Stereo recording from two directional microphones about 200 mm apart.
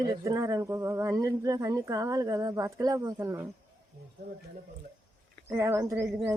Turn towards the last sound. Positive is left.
turn(degrees=-15)  # may be behind; listen again after turning